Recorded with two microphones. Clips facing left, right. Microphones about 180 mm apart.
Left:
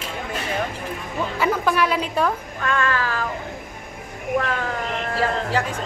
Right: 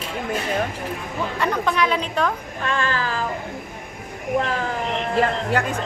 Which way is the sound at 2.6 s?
30° right (ahead or behind).